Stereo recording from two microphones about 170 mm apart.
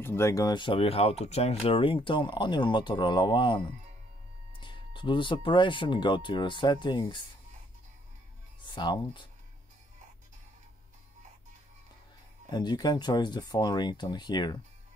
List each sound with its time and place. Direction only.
0.0 s speech: 15° left (ahead or behind)
8.6 s speech: 25° left (ahead or behind)
12.4 s speech: 25° left (ahead or behind)